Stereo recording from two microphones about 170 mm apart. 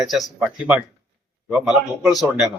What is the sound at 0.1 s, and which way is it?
A man's voice, 5° right (ahead or behind).